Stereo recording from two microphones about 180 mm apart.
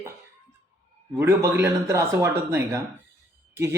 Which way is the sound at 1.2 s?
10° right (ahead or behind).